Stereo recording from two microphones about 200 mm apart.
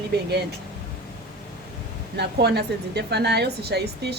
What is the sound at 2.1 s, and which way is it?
A woman's voice, 55° right (ahead or behind).